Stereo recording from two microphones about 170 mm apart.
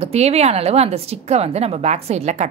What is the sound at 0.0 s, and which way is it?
A woman's voice, 40° right (ahead or behind).